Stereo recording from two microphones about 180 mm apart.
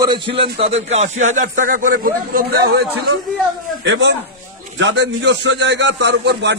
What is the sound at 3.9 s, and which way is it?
A man's voice, 85° right.